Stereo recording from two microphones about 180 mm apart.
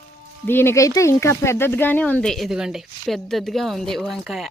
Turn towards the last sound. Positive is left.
turn(degrees=0)  # may be behind; listen again after turning